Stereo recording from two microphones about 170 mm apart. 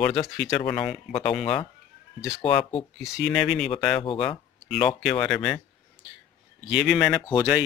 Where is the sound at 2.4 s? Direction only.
30° left (ahead or behind).